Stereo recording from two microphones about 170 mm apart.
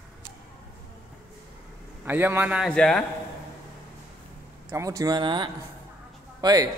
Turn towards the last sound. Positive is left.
turn(degrees=-25)  # may be behind; listen again after turning